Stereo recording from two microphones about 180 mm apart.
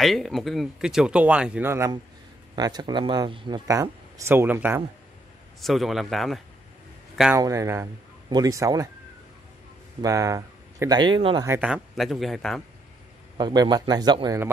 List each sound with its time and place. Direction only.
0.0 s speech: centre (ahead or behind)
5.6 s speech: centre (ahead or behind)
7.3 s speech: 15° right (ahead or behind)
10.0 s speech: 20° right (ahead or behind)
11.4 s speech: 10° right (ahead or behind)
13.4 s speech: 25° right (ahead or behind)